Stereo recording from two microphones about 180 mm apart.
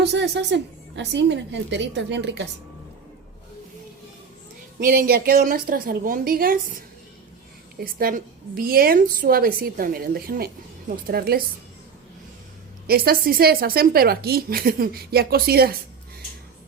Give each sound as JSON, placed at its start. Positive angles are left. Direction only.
{"t": 0.0, "sound": "a woman's voice", "side_deg": -75}
{"t": 4.8, "sound": "a woman's voice", "side_deg": -55}
{"t": 7.9, "sound": "a woman's voice", "side_deg": -55}
{"t": 12.9, "sound": "a woman's voice", "side_deg": -55}